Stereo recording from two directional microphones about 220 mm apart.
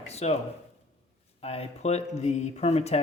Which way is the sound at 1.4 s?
25° left (ahead or behind).